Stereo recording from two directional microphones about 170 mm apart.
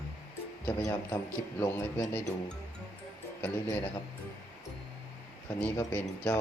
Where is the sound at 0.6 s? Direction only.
15° left (ahead or behind).